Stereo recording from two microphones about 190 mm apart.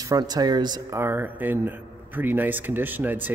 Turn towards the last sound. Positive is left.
turn(degrees=-10)  # may be behind; listen again after turning